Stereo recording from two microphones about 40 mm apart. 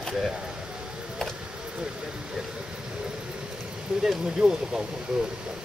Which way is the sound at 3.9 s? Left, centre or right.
Right.